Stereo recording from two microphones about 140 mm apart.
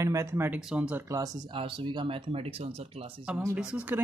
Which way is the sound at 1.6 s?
35° right (ahead or behind).